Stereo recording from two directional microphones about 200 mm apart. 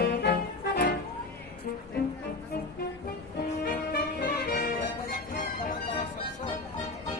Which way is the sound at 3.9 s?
50° left (ahead or behind).